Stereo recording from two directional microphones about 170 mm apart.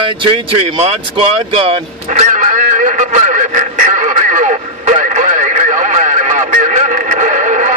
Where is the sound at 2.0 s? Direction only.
45° right (ahead or behind).